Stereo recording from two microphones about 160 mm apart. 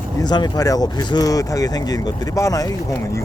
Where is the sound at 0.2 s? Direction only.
25° left (ahead or behind).